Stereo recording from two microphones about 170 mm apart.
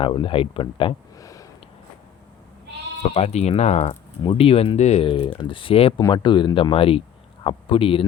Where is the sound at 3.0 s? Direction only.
40° left (ahead or behind).